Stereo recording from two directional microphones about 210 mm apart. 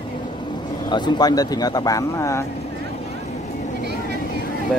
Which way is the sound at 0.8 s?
20° left (ahead or behind).